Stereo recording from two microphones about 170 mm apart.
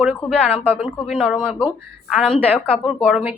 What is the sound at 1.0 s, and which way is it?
A woman's voice, 5° left (ahead or behind).